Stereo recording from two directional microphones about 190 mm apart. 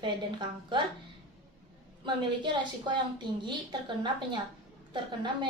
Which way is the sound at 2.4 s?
25° right (ahead or behind).